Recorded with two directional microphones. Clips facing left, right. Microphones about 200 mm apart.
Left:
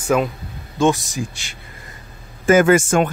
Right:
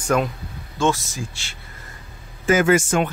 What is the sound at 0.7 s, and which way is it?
Speech, 15° left (ahead or behind).